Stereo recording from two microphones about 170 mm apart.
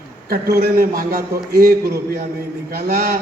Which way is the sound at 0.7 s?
55° right (ahead or behind).